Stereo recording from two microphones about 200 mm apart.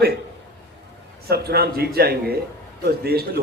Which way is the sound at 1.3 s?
50° right (ahead or behind).